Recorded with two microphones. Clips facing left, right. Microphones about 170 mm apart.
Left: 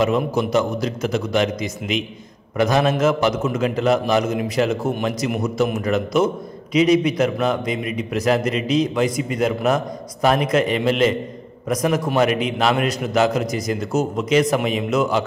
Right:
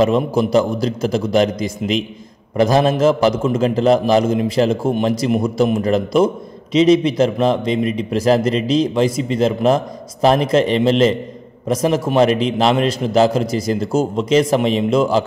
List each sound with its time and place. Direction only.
0.0 s a man's voice: 30° right (ahead or behind)